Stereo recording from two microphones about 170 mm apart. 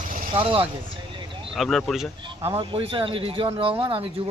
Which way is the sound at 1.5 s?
Centre (ahead or behind).